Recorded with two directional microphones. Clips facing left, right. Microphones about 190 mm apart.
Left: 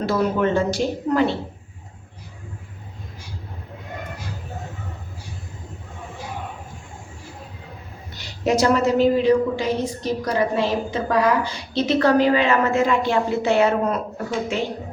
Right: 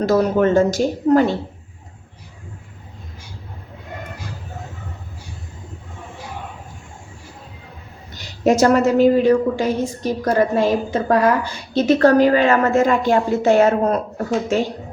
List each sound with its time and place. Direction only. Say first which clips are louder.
0.0 s a woman's voice: right 5 dB; 40° right (ahead or behind)
8.4 s a woman's voice: right 4 dB; 45° right (ahead or behind)